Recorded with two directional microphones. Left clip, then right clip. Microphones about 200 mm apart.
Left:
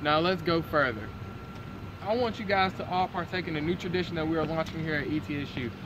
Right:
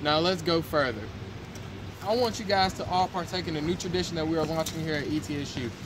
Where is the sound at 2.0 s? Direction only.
15° right (ahead or behind).